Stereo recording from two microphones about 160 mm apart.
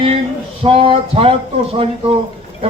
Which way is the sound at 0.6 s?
35° right (ahead or behind).